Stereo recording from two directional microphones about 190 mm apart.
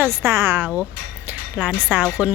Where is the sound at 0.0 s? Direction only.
15° right (ahead or behind).